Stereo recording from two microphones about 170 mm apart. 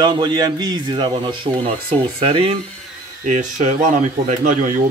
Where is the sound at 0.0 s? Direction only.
25° right (ahead or behind).